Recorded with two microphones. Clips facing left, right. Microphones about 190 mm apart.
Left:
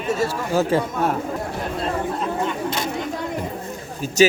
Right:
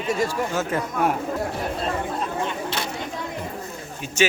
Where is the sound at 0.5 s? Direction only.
35° left (ahead or behind).